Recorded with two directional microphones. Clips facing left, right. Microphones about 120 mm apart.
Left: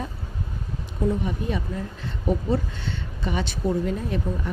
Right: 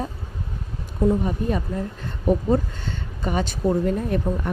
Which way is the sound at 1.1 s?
40° right (ahead or behind).